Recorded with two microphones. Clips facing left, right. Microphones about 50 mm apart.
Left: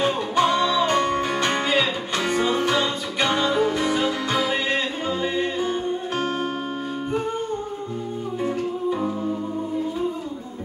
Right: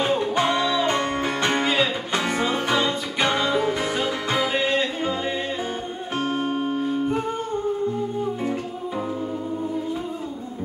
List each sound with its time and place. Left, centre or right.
0.0 s music: right
3.3 s music: centre
4.3 s music: right
6.1 s music: left